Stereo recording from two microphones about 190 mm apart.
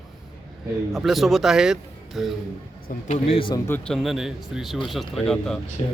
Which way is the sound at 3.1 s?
30° left (ahead or behind).